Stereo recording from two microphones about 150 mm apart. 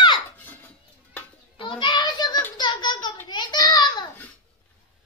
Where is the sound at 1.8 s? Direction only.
30° left (ahead or behind).